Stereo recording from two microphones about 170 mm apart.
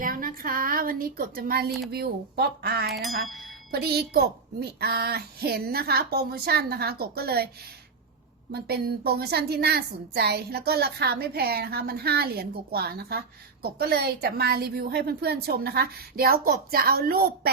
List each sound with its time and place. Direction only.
0.0 s a child's voice: 55° right (ahead or behind)
1.9 s a woman's voice: 70° right (ahead or behind)
2.9 s music: centre (ahead or behind)
3.7 s a woman's voice: 70° right (ahead or behind)
8.5 s a woman's voice: 70° right (ahead or behind)